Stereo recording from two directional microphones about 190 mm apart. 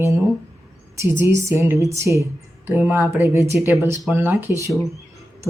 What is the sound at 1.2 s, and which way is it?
Speech, 15° right (ahead or behind).